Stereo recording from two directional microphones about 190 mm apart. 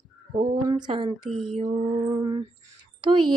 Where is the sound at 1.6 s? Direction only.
40° right (ahead or behind).